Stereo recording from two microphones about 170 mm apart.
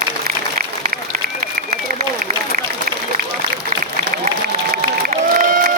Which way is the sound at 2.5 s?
55° right (ahead or behind).